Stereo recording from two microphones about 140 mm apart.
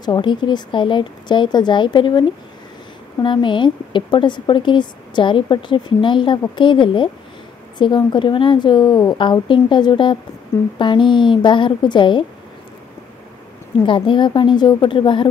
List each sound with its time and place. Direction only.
0.0 s a woman's voice: 30° left (ahead or behind)
13.8 s a woman's voice: 35° left (ahead or behind)